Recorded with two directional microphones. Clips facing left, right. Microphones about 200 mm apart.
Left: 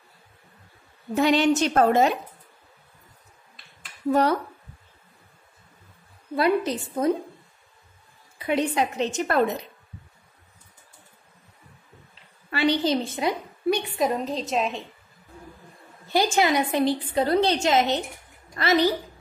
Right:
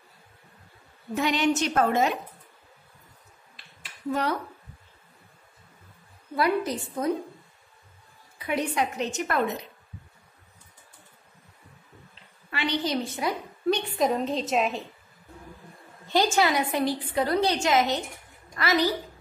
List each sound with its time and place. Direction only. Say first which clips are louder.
1.1 s a woman's voice: left 5 dB; 30° left (ahead or behind)
6.3 s a woman's voice: left 3 dB; 25° left (ahead or behind)
8.5 s a woman's voice: left 3 dB; 25° left (ahead or behind)
12.4 s a woman's voice: left 6 dB; 35° left (ahead or behind)
13.7 s a woman's voice: left 1 dB; centre (ahead or behind)
16.1 s a woman's voice: left 1 dB; 15° left (ahead or behind)